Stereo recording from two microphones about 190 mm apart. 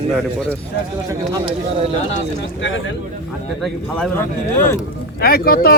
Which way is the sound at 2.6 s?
75° left (ahead or behind).